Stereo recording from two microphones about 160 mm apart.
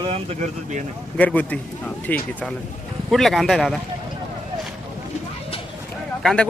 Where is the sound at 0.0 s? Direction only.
40° right (ahead or behind).